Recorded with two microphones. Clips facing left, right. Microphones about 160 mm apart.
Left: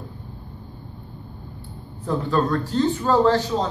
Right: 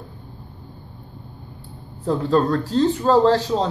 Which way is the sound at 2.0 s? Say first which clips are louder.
Right 3 dB; 30° right (ahead or behind).